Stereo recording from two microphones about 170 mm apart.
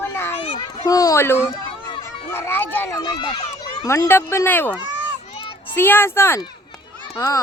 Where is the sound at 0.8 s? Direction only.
20° left (ahead or behind).